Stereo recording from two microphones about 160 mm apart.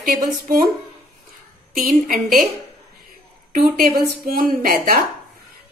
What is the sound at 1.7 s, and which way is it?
Speech, 60° right (ahead or behind).